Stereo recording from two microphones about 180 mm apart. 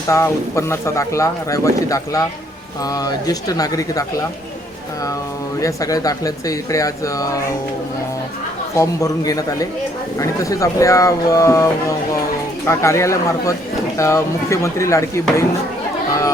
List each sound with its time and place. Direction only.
0.1 s speech: 15° left (ahead or behind)
5.5 s speech: 20° left (ahead or behind)
8.7 s speech: 15° left (ahead or behind)